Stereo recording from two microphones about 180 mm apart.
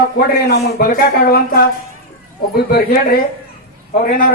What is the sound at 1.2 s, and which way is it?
Speech, 55° left (ahead or behind).